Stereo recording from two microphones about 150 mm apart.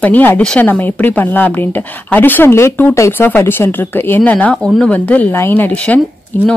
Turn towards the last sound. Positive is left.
turn(degrees=10)  # may be behind; listen again after turning